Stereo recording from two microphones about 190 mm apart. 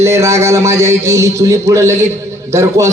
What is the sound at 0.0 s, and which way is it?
A man's voice, 15° right (ahead or behind).